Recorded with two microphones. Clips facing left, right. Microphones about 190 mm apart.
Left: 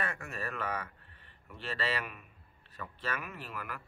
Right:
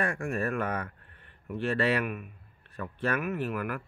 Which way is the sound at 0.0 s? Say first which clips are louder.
Right 9 dB; 50° right (ahead or behind).